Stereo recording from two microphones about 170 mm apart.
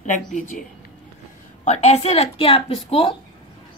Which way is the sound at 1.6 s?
40° left (ahead or behind).